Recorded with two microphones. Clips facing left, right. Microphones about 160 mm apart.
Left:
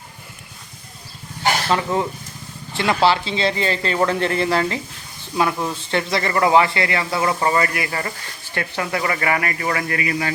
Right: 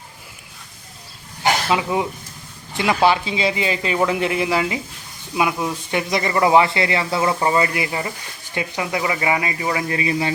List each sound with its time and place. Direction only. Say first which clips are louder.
1.7 s speech: even; 10° right (ahead or behind)